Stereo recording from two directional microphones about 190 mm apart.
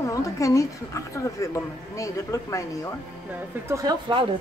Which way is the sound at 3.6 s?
15° right (ahead or behind).